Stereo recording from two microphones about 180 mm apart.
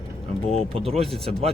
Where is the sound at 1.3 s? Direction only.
35° right (ahead or behind).